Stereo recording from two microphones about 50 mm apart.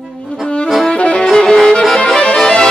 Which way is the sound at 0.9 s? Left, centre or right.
Left.